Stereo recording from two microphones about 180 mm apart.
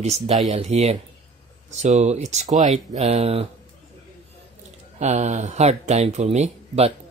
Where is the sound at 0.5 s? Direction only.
35° right (ahead or behind).